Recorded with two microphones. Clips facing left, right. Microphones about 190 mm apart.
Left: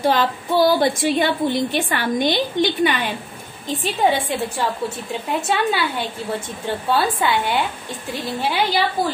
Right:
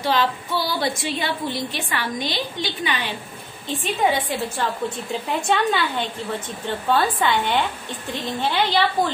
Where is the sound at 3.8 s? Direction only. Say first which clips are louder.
Left 2 dB; 30° left (ahead or behind).